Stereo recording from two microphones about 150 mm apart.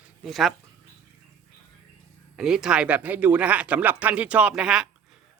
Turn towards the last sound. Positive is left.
turn(degrees=-5)  # may be behind; listen again after turning